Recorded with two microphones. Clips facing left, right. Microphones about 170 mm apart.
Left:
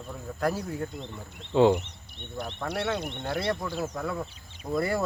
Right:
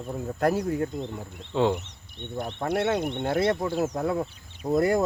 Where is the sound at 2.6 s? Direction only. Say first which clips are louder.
Right 6 dB; 50° right (ahead or behind).